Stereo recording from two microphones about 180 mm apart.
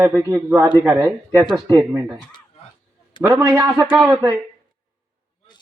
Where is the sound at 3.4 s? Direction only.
20° right (ahead or behind).